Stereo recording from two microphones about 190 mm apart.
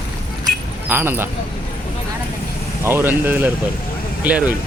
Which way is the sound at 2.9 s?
10° right (ahead or behind).